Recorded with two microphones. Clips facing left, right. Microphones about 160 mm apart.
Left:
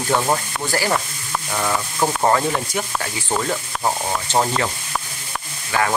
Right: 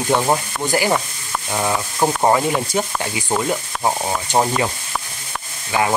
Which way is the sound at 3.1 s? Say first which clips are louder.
Right 3 dB; 15° right (ahead or behind).